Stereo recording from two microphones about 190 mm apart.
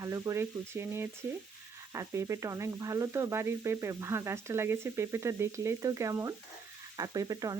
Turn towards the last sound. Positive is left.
turn(degrees=-20)  # may be behind; listen again after turning